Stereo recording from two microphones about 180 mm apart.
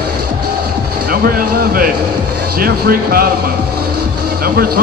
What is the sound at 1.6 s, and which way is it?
Speech, 55° right (ahead or behind).